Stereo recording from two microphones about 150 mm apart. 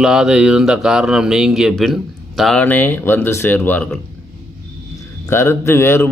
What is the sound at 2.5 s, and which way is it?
A man's voice, 10° left (ahead or behind).